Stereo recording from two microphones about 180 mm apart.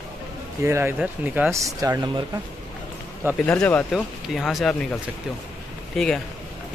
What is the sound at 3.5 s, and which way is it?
Speech, 10° left (ahead or behind).